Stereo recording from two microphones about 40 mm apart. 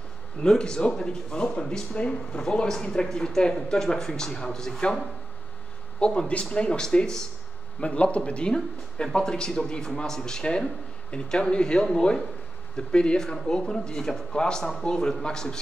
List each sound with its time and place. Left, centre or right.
0.4 s speech: centre
5.9 s speech: left
7.8 s a man's voice: left